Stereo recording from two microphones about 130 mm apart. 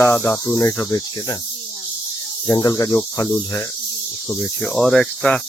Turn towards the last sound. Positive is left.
turn(degrees=5)  # may be behind; listen again after turning